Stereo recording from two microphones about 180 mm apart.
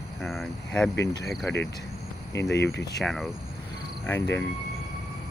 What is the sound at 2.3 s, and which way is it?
Speech, 70° left (ahead or behind).